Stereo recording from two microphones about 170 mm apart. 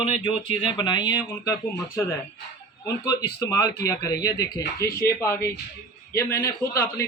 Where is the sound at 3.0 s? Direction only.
20° left (ahead or behind).